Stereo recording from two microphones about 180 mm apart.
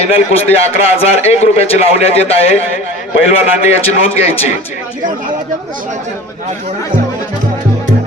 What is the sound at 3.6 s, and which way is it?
Speech, 35° left (ahead or behind).